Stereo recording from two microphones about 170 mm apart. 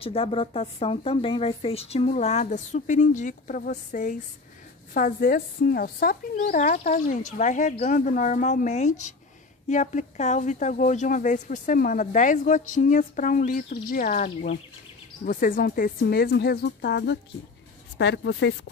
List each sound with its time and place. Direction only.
0.0 s a woman's voice: 35° left (ahead or behind); by 18.5 s 90° left